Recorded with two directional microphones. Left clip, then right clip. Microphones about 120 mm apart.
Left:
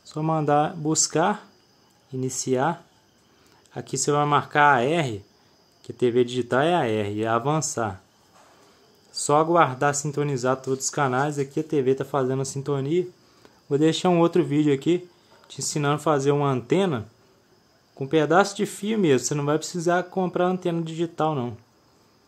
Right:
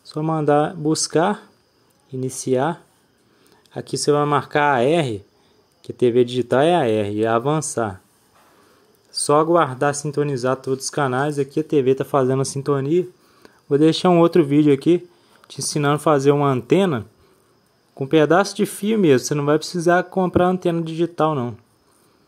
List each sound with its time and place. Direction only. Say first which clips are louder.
0.0 s speech: right 4 dB; 20° right (ahead or behind)
9.1 s speech: right 4 dB; 30° right (ahead or behind); by 12.5 s 55° right (ahead or behind)
12.5 s speech: right 5 dB; 40° right (ahead or behind)